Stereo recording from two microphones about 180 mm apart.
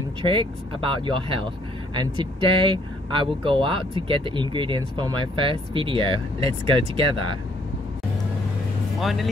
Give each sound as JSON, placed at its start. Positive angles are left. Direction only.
{"t": 0.2, "sound": "speech", "side_deg": -30}
{"t": 9.0, "sound": "speech", "side_deg": 0}